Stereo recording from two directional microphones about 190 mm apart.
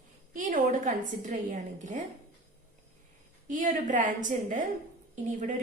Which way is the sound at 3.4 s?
40° right (ahead or behind).